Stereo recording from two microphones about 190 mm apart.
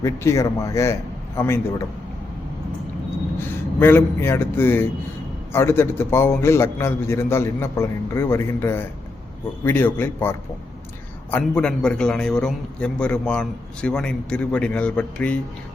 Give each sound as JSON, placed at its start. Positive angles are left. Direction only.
{"t": 0.0, "sound": "a man's voice", "side_deg": 15}
{"t": 3.3, "sound": "a man's voice", "side_deg": 10}